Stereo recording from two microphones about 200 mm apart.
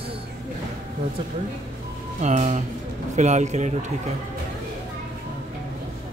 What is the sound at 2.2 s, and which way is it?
Speech, 35° right (ahead or behind).